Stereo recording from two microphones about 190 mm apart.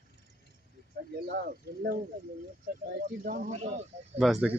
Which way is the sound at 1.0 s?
50° right (ahead or behind).